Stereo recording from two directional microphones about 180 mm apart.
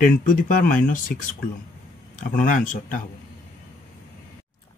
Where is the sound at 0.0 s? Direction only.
50° left (ahead or behind).